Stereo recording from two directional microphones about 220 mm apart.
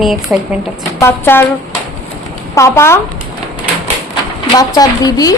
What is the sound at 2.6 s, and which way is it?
Speech, 15° left (ahead or behind).